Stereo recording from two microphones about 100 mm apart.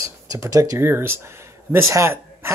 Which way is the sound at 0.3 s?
35° right (ahead or behind).